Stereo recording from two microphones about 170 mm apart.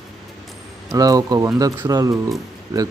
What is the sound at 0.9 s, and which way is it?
Speech, 20° right (ahead or behind).